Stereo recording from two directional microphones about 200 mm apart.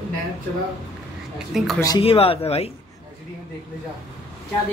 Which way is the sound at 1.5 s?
Centre (ahead or behind).